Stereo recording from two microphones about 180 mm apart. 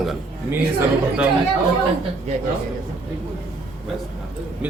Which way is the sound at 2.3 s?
40° right (ahead or behind).